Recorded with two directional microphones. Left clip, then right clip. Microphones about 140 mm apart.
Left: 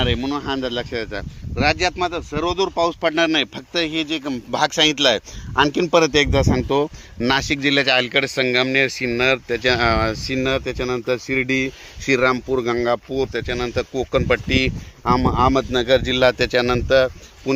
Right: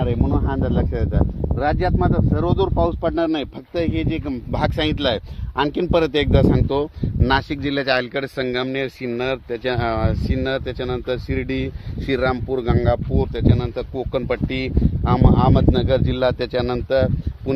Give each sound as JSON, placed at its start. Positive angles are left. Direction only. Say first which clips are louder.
{"t": 0.0, "sound": "speech", "louder": "left 1 dB", "side_deg": 25}
{"t": 1.5, "sound": "speech", "louder": "left 2 dB", "side_deg": 65}
{"t": 3.2, "sound": "speech", "louder": "left 3 dB", "side_deg": 25}